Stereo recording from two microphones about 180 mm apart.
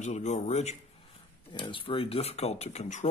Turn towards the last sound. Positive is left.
turn(degrees=40)  # may be behind; listen again after turning